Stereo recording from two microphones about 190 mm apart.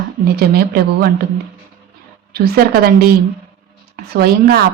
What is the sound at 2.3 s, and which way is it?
Speech, 55° right (ahead or behind).